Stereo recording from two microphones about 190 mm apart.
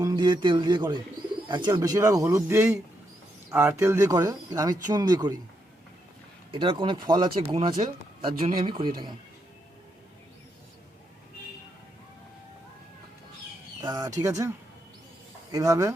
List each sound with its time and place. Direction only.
0.0 s speech: 20° right (ahead or behind)
6.5 s speech: 25° right (ahead or behind)
13.8 s speech: 20° right (ahead or behind)
15.5 s speech: 15° right (ahead or behind)